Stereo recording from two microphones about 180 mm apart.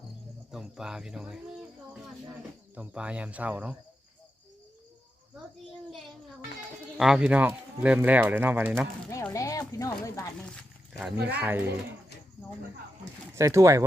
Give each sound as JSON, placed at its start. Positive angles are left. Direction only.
{"t": 0.5, "sound": "speech", "side_deg": -5}
{"t": 2.7, "sound": "speech", "side_deg": -5}
{"t": 6.9, "sound": "speech", "side_deg": -5}
{"t": 9.3, "sound": "a sound", "side_deg": 20}
{"t": 10.4, "sound": "speech", "side_deg": 5}
{"t": 13.3, "sound": "speech", "side_deg": -15}